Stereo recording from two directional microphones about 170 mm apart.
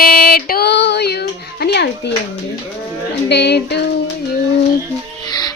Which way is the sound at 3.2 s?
80° left.